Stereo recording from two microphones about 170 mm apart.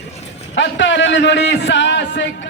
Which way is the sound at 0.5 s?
90° left.